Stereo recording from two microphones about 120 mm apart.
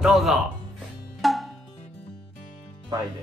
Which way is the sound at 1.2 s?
Centre (ahead or behind).